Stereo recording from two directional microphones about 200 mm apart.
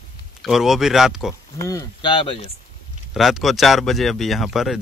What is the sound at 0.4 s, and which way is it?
Speech, centre (ahead or behind).